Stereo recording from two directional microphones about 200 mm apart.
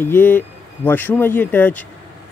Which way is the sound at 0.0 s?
10° left (ahead or behind).